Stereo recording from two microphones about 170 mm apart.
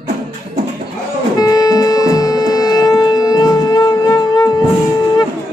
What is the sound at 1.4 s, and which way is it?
Music, 20° left (ahead or behind).